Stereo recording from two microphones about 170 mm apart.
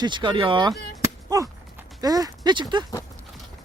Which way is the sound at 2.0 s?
20° right (ahead or behind).